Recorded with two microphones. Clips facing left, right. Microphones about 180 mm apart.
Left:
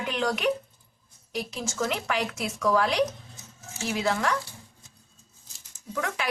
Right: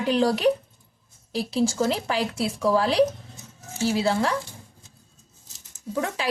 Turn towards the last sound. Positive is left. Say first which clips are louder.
# right 4 dB
turn(degrees=-30)  # may be behind; listen again after turning